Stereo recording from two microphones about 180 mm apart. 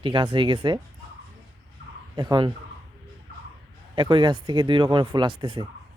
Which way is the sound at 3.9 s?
25° right (ahead or behind).